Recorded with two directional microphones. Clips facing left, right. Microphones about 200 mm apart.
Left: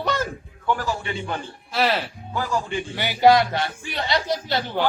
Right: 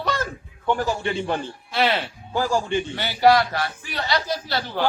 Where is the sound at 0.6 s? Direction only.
25° right (ahead or behind).